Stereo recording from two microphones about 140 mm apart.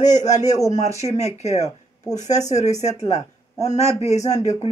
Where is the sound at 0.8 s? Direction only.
50° left (ahead or behind).